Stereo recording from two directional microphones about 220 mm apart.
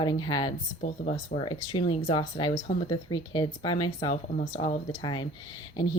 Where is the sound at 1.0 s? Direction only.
35° left (ahead or behind).